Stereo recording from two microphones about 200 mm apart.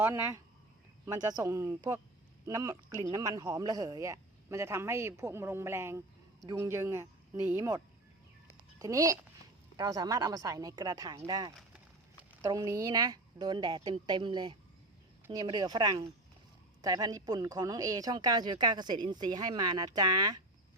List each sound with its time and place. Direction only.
0.0 s speech: 15° right (ahead or behind)
8.8 s a woman's voice: 15° right (ahead or behind)